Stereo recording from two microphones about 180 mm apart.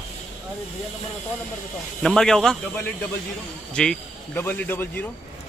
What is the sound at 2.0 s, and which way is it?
Speech, 5° left (ahead or behind).